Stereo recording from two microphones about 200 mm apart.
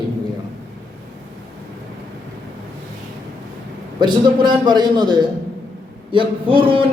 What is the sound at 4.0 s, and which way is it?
A man's voice, 20° right (ahead or behind).